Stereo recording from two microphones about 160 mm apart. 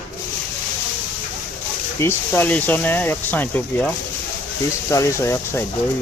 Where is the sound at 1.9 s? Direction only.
15° left (ahead or behind).